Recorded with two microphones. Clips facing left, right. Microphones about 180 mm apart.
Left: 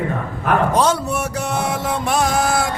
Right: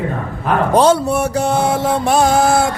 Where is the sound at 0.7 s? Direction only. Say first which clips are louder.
Right 6 dB; 30° right (ahead or behind).